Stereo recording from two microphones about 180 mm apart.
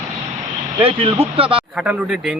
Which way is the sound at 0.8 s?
30° right (ahead or behind).